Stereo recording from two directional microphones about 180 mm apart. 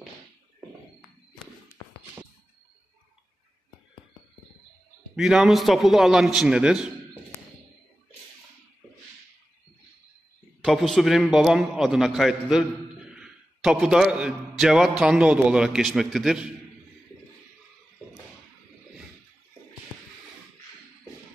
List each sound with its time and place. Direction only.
5.1 s a man's voice: centre (ahead or behind)
10.6 s a man's voice: centre (ahead or behind)